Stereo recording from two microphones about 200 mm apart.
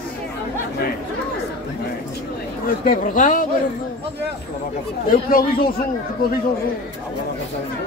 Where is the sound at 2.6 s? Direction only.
45° left (ahead or behind).